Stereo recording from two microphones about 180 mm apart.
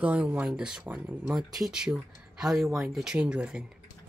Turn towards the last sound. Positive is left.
turn(degrees=-5)  # may be behind; listen again after turning